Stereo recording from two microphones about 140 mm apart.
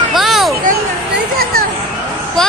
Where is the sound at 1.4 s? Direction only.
90° right.